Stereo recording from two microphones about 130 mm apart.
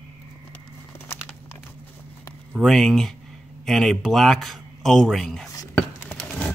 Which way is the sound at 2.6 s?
5° left (ahead or behind).